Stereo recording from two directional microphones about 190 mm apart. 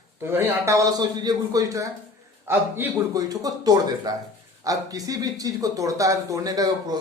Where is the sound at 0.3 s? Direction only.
15° right (ahead or behind).